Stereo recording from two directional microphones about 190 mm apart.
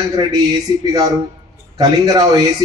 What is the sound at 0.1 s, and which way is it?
A man's voice, 20° right (ahead or behind).